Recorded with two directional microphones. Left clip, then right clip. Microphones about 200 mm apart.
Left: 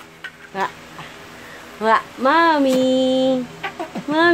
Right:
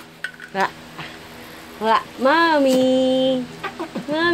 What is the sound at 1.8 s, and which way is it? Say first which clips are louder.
A woman's voice: left 1 dB; 10° left (ahead or behind).